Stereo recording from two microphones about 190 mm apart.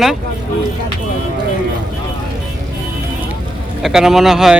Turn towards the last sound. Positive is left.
turn(degrees=0)  # may be behind; listen again after turning